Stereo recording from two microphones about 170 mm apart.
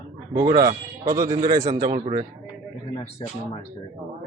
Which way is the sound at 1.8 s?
40° right (ahead or behind).